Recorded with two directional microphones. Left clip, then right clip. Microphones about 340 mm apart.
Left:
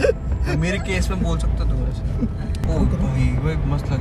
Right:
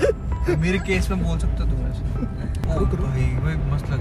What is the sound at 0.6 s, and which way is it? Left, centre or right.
Speech, centre.